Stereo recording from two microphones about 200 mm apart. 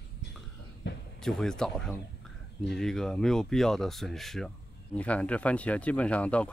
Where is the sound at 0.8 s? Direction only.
60° left (ahead or behind).